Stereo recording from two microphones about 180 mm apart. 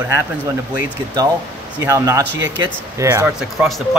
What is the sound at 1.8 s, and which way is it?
Speech, 20° right (ahead or behind).